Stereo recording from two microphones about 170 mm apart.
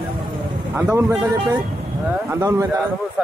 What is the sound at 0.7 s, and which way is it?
Speech, 15° right (ahead or behind).